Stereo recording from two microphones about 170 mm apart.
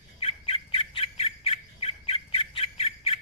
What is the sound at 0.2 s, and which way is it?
Squawk, 35° left (ahead or behind).